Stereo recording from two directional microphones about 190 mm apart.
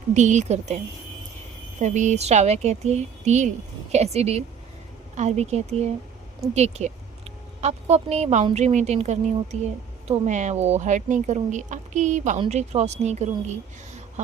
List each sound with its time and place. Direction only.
0.1 s speech: 40° right (ahead or behind)
1.8 s speech: 40° right (ahead or behind)